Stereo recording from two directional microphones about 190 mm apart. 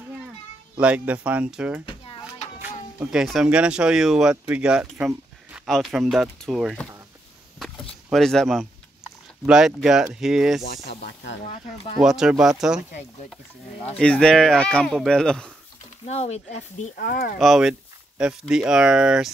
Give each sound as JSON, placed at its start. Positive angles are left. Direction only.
{"t": 0.7, "sound": "speech", "side_deg": -5}
{"t": 3.0, "sound": "speech", "side_deg": -5}
{"t": 8.1, "sound": "speech", "side_deg": 0}
{"t": 10.6, "sound": "speech", "side_deg": 55}
{"t": 11.4, "sound": "speech", "side_deg": 35}
{"t": 12.0, "sound": "speech", "side_deg": -5}
{"t": 13.9, "sound": "speech", "side_deg": 5}
{"t": 16.1, "sound": "speech", "side_deg": 35}
{"t": 16.9, "sound": "speech", "side_deg": 50}
{"t": 17.4, "sound": "speech", "side_deg": 0}